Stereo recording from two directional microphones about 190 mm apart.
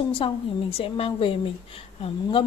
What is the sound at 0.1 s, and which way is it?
Speech, 30° left (ahead or behind).